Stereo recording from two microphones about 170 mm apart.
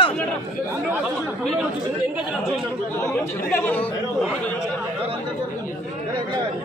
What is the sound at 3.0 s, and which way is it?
Speech, 15° left (ahead or behind).